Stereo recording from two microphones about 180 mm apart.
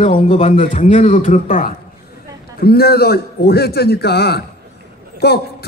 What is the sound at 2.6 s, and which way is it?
A man's voice, 60° left (ahead or behind).